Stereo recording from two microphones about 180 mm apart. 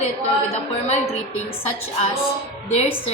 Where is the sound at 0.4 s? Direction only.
35° left (ahead or behind).